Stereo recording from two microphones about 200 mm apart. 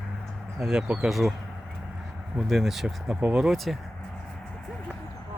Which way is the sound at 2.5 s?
Centre (ahead or behind).